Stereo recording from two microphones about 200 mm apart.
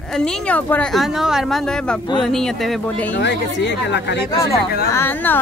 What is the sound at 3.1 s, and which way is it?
Speech, 60° left (ahead or behind).